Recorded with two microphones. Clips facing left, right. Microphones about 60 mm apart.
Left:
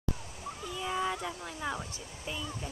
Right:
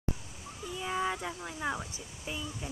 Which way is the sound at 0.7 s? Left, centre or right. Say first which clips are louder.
Even; centre.